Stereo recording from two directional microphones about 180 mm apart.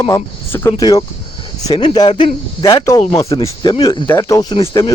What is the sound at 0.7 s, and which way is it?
Speech, 25° left (ahead or behind).